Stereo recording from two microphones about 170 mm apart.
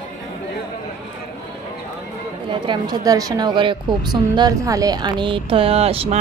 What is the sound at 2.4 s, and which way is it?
A woman's voice, 25° right (ahead or behind).